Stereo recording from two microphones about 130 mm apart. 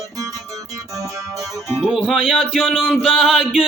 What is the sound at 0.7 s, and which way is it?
Music, 25° right (ahead or behind).